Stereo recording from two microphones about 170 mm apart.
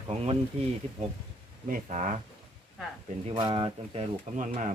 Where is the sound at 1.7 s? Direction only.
45° right (ahead or behind).